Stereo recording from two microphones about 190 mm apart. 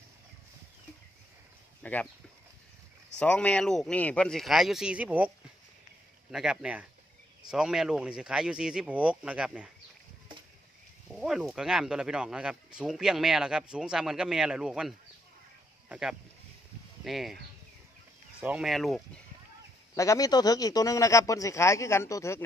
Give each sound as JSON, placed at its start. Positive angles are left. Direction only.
{"t": 1.8, "sound": "speech", "side_deg": 10}
{"t": 3.2, "sound": "speech", "side_deg": 5}
{"t": 6.3, "sound": "speech", "side_deg": -5}
{"t": 11.1, "sound": "speech", "side_deg": 0}
{"t": 18.4, "sound": "speech", "side_deg": -5}
{"t": 20.0, "sound": "speech", "side_deg": 20}